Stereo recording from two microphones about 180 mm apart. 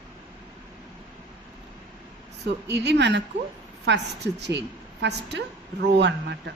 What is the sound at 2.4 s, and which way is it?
A woman's voice, 70° right (ahead or behind).